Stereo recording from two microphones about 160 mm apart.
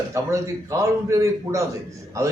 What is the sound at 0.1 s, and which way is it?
A man's voice, 20° right (ahead or behind).